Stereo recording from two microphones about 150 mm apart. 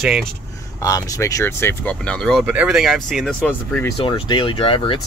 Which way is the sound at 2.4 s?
10° right (ahead or behind).